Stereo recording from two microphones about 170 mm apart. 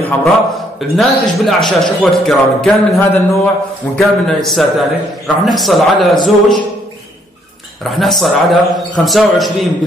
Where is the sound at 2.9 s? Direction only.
20° left (ahead or behind).